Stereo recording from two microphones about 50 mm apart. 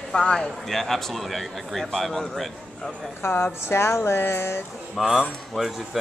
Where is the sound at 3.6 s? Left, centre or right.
Left.